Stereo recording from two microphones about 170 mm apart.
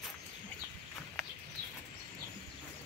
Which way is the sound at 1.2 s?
Centre (ahead or behind).